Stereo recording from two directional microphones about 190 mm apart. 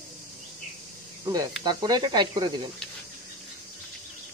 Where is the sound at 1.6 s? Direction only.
20° right (ahead or behind).